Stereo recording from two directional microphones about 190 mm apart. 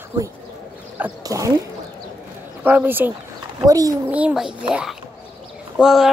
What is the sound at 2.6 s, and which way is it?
Speech, 10° right (ahead or behind).